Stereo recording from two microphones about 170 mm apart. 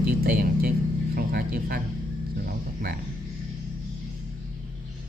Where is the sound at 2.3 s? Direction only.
60° right (ahead or behind).